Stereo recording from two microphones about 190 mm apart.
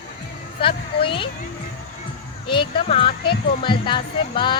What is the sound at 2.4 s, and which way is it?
Speech, 25° left (ahead or behind).